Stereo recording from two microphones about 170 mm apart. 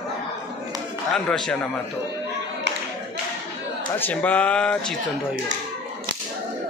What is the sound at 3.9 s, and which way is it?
Speech, 10° left (ahead or behind).